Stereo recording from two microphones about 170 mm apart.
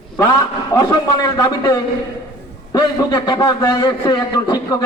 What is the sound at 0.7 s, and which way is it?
A man's voice, 20° left (ahead or behind).